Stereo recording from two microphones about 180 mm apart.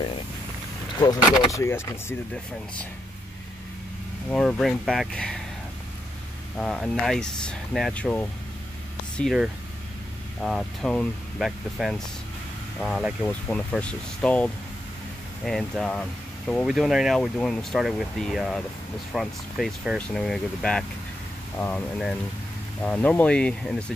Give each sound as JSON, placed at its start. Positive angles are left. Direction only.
{"t": 0.9, "sound": "speech", "side_deg": 20}
{"t": 4.3, "sound": "speech", "side_deg": 5}
{"t": 6.6, "sound": "speech", "side_deg": 5}